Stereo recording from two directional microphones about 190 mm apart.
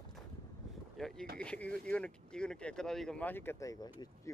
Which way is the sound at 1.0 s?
5° left (ahead or behind).